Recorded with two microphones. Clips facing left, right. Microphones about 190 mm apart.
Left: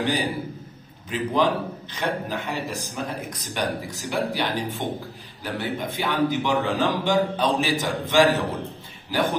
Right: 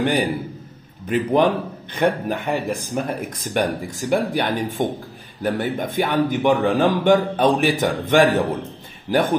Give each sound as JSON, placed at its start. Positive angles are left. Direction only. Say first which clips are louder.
{"t": 1.0, "sound": "speech", "louder": "right 5 dB", "side_deg": -55}